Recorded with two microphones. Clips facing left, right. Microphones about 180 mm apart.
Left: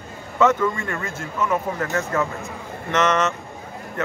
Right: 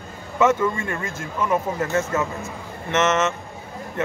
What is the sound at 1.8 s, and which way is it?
A man's voice, 25° right (ahead or behind).